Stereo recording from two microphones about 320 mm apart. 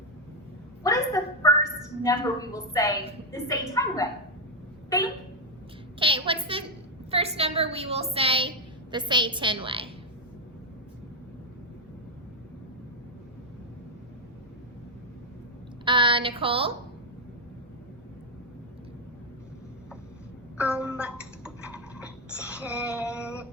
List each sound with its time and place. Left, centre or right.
0.9 s a sound: centre
2.0 s a woman's voice: centre
6.0 s a woman's voice: centre
15.8 s speech: centre
20.6 s a woman's voice: centre
21.0 s a sound: centre